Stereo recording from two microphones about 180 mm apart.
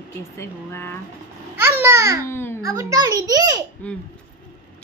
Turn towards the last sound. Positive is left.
turn(degrees=10)  # may be behind; listen again after turning